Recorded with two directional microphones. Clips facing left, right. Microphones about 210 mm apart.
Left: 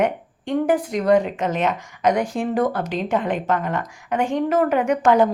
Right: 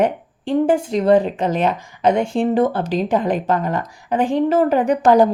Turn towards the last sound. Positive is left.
turn(degrees=-35)  # may be behind; listen again after turning